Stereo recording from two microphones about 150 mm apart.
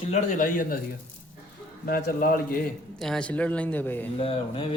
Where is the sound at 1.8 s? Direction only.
75° left (ahead or behind).